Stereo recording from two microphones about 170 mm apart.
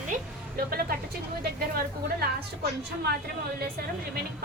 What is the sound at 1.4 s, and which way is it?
Speech, 65° right (ahead or behind).